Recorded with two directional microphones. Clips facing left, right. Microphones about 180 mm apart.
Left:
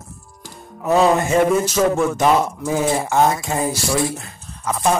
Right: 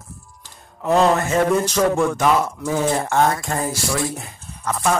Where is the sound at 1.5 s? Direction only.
5° left (ahead or behind).